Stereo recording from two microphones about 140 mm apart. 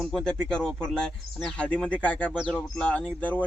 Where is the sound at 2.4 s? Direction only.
5° right (ahead or behind).